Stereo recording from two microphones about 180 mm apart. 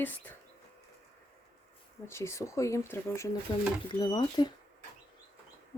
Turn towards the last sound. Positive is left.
turn(degrees=25)  # may be behind; listen again after turning